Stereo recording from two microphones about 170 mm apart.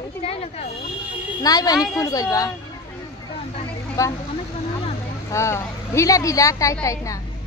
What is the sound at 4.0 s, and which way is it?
Speech, 20° left (ahead or behind).